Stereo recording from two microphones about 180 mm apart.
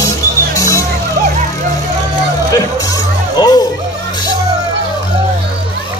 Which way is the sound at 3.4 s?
20° left (ahead or behind).